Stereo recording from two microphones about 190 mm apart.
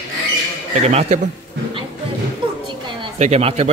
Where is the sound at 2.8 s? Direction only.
30° right (ahead or behind).